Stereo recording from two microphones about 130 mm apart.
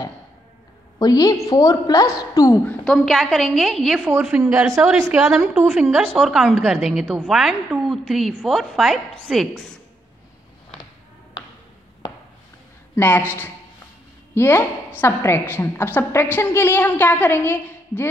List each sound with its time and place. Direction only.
0.9 s a woman's voice: 30° left (ahead or behind)
2.8 s a woman's voice: 5° left (ahead or behind)
3.9 s a woman's voice: 15° right (ahead or behind)
12.9 s a woman's voice: 15° left (ahead or behind)